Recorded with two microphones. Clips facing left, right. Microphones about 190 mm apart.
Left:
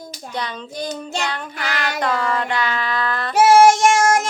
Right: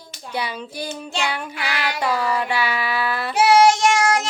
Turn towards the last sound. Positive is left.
turn(degrees=50)  # may be behind; listen again after turning